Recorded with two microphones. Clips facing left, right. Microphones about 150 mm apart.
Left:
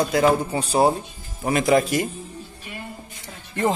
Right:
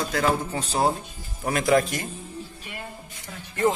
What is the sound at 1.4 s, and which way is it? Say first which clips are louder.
Speech: left 2 dB; centre (ahead or behind).